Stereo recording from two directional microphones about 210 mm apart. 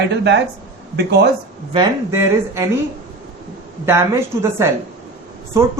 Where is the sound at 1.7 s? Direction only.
15° right (ahead or behind).